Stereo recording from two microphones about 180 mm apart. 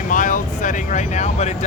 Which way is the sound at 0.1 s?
45° left (ahead or behind).